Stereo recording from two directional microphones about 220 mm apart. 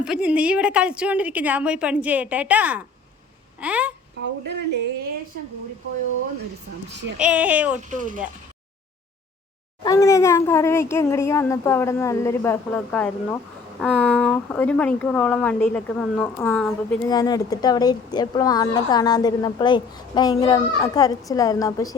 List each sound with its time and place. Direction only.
0.0 s a woman's voice: 5° right (ahead or behind)
4.2 s speech: 50° right (ahead or behind)
7.2 s speech: 5° right (ahead or behind)
7.8 s speech: 35° right (ahead or behind)
9.8 s a child's voice: 15° left (ahead or behind)
17.1 s a child's voice: 15° left (ahead or behind)